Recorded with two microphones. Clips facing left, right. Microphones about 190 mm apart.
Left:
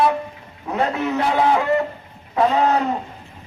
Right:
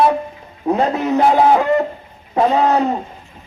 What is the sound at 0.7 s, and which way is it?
Speech, 35° right (ahead or behind).